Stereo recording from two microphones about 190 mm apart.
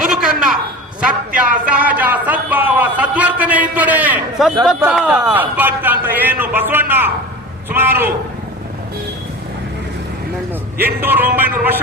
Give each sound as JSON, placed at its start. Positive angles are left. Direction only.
{"t": 0.0, "sound": "a sound", "side_deg": -5}
{"t": 1.4, "sound": "speech", "side_deg": -5}
{"t": 10.8, "sound": "speech", "side_deg": -10}